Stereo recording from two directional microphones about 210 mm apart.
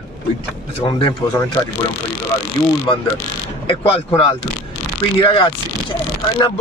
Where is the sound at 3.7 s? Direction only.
25° left (ahead or behind).